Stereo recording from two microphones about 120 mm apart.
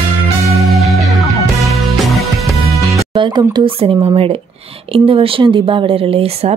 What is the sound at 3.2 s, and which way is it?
Speech, 40° right (ahead or behind).